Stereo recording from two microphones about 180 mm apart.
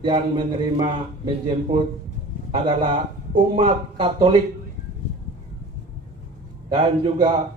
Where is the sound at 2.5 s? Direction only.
30° right (ahead or behind).